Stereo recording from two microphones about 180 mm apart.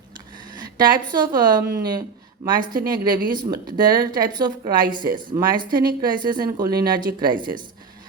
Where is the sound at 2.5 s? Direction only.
50° right (ahead or behind).